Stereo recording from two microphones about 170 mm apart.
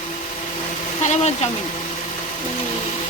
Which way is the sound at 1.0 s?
40° left (ahead or behind).